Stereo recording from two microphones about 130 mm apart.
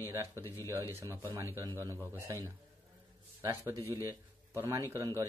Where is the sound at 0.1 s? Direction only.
20° right (ahead or behind).